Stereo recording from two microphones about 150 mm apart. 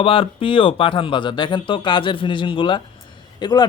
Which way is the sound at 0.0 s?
35° left (ahead or behind).